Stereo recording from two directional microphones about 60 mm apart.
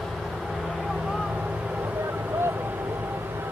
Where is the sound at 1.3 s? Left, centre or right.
Right.